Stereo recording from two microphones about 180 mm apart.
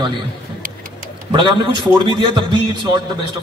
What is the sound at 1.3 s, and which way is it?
A man's voice, 25° right (ahead or behind).